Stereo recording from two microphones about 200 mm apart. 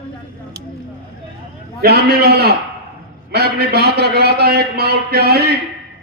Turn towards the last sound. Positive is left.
turn(degrees=-55)  # may be behind; listen again after turning